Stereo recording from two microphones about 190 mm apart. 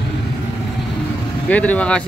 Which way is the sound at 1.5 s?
5° left (ahead or behind).